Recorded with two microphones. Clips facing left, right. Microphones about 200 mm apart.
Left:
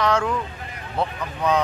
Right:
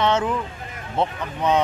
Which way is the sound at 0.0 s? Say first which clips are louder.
Right 1 dB; 25° right (ahead or behind).